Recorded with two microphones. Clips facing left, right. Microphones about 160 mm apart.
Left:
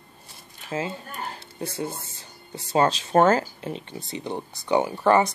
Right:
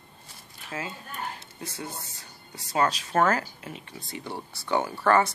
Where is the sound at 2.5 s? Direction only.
30° left (ahead or behind).